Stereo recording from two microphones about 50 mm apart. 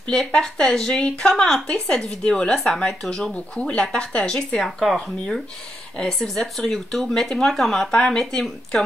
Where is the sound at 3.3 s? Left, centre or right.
Centre.